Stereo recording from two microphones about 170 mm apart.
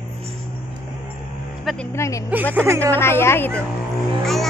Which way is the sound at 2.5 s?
15° right (ahead or behind).